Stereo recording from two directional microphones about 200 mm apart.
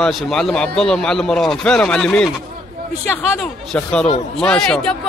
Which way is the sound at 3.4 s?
Centre (ahead or behind).